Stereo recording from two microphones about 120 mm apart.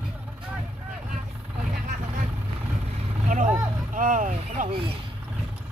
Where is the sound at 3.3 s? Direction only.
90° right.